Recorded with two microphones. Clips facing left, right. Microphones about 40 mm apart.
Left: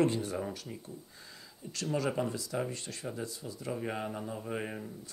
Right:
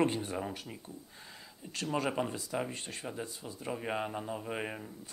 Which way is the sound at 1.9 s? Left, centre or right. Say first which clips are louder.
Left 1 dB; right.